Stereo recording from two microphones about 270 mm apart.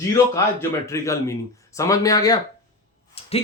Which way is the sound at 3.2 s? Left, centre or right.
Left.